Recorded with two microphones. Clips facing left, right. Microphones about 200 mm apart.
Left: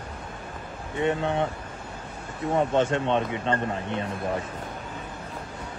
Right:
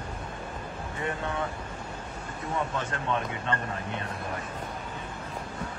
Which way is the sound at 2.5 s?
30° left (ahead or behind).